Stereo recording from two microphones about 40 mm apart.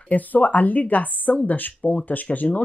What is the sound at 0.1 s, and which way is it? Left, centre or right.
A woman's voice, left.